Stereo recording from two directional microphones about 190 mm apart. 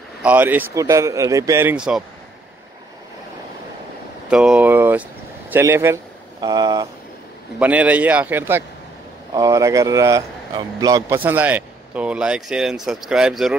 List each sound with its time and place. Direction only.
0.2 s speech: 10° right (ahead or behind)
4.3 s speech: 5° right (ahead or behind)
7.5 s speech: 10° right (ahead or behind)